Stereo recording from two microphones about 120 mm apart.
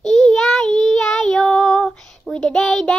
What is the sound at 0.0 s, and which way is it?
Child singing, 5° left (ahead or behind).